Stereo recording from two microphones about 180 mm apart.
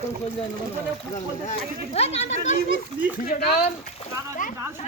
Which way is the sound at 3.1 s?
55° left (ahead or behind).